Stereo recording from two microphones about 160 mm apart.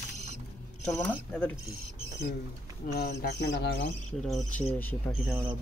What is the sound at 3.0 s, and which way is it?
Speech, 90° left.